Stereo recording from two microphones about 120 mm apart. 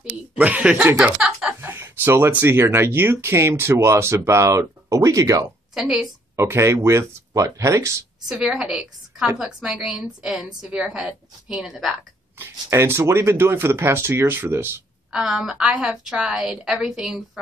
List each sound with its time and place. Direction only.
0.4 s a woman's voice: 10° right (ahead or behind); by 5.5 s 25° right (ahead or behind)
5.8 s a woman's voice: 5° right (ahead or behind)
6.3 s speech: 20° right (ahead or behind)
8.3 s a woman's voice: 5° right (ahead or behind)
12.4 s speech: 20° right (ahead or behind)
15.1 s a woman's voice: 5° right (ahead or behind)